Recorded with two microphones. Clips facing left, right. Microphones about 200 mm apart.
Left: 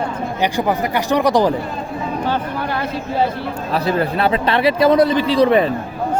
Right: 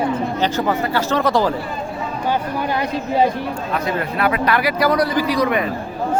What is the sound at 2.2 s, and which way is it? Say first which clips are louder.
Speech: right 3 dB; 15° right (ahead or behind).